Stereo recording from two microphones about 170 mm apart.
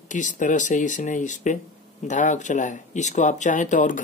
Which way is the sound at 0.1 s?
45° left (ahead or behind).